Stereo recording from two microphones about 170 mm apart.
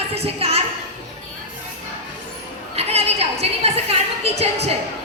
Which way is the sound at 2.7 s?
35° right (ahead or behind).